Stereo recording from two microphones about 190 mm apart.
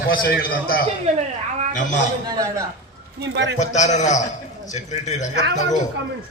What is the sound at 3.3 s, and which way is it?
Speech, 65° right (ahead or behind).